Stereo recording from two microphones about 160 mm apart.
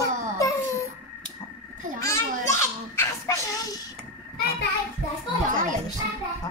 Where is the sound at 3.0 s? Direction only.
25° left (ahead or behind).